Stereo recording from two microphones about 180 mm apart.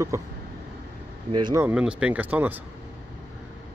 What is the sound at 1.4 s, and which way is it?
Speech, 15° right (ahead or behind).